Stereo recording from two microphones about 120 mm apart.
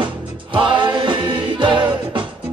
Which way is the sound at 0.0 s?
45° right (ahead or behind).